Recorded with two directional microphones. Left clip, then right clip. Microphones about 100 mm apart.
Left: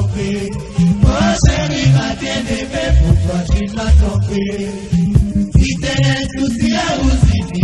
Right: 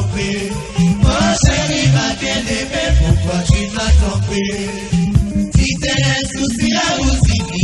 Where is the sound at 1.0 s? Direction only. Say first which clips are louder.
Right 1 dB; 30° right (ahead or behind).